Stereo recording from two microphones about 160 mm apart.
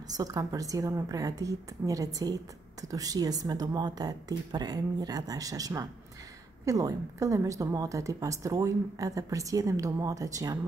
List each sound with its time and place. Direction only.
0.1 s a woman's voice: 20° right (ahead or behind)